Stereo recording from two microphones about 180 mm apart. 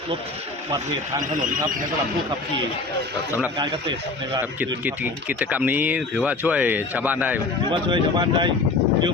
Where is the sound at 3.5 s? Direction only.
30° right (ahead or behind).